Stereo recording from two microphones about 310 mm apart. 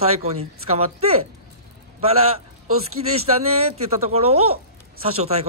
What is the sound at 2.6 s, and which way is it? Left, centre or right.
Speech, right.